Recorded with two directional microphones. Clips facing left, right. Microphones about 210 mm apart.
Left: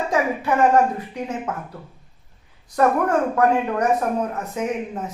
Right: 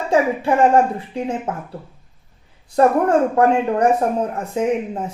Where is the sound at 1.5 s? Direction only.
30° right (ahead or behind).